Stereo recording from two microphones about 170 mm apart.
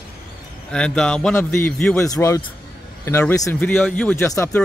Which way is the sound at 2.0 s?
20° left (ahead or behind).